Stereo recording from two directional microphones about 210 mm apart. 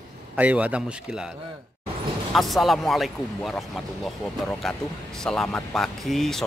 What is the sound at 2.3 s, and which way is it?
Speech, centre (ahead or behind).